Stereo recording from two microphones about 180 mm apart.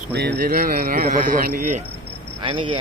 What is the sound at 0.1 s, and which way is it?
Speech, 65° right (ahead or behind).